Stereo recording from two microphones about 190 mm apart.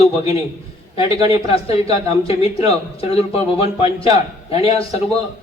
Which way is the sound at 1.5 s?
30° left (ahead or behind).